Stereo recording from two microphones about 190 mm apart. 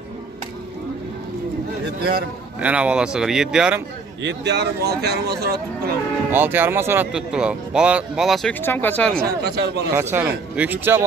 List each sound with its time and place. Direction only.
2.0 s a man's voice: 55° right (ahead or behind)
2.6 s speech: 5° right (ahead or behind)
4.2 s speech: 65° right (ahead or behind)
6.3 s speech: 10° right (ahead or behind); by 9.2 s 5° left (ahead or behind)
9.4 s speech: 60° right (ahead or behind)
9.9 s speech: 10° right (ahead or behind)